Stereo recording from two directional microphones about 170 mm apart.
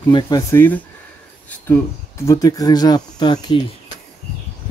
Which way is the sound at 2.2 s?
20° left (ahead or behind).